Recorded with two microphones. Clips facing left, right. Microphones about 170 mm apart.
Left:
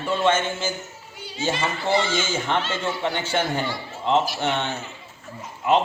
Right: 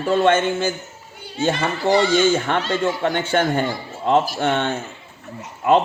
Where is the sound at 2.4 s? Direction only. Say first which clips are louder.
Right 4 dB; 45° right (ahead or behind).